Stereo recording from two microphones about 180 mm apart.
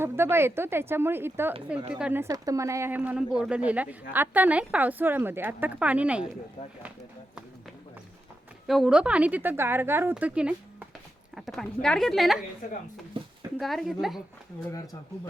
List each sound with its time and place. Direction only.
0.0 s speech: 15° right (ahead or behind)
2.2 s speech: 20° right (ahead or behind)
8.6 s speech: centre (ahead or behind)
13.2 s a sound: 30° right (ahead or behind)
13.6 s speech: centre (ahead or behind)